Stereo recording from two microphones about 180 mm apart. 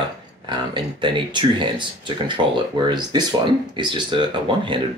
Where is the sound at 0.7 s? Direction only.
25° right (ahead or behind).